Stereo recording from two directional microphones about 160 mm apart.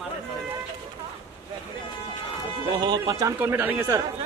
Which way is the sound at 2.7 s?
30° right (ahead or behind).